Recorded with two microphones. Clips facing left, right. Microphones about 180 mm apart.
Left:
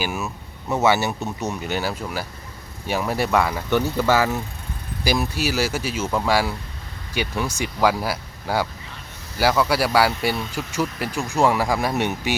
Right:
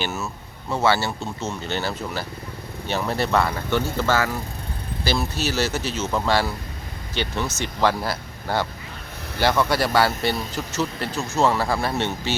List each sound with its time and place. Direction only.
0.0 s speech: 10° left (ahead or behind)